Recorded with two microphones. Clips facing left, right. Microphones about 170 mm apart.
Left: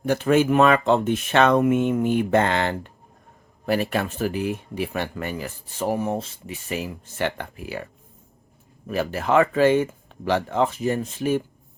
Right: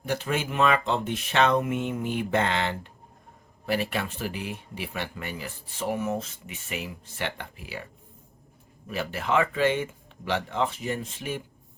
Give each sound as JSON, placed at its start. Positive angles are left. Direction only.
{"t": 0.0, "sound": "speech", "side_deg": 50}
{"t": 8.9, "sound": "speech", "side_deg": 45}